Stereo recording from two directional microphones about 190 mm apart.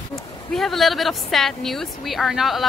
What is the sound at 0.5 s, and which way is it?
A woman's voice, centre (ahead or behind).